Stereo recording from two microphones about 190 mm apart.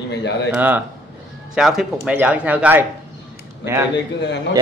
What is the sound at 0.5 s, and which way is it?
A man's voice, 10° right (ahead or behind).